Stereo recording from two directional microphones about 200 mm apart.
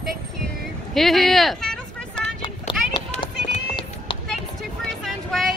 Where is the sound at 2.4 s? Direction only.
25° left (ahead or behind).